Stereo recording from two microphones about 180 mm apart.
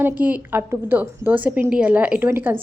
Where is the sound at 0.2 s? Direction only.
10° right (ahead or behind).